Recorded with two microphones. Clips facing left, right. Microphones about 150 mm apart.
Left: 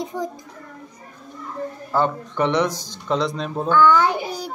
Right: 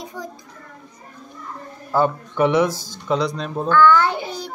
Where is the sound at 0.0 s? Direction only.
20° left (ahead or behind).